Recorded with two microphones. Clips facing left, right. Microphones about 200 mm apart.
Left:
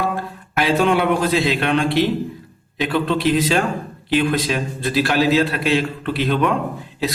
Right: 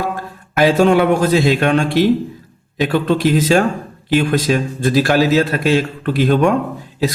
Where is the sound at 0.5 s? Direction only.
45° right (ahead or behind).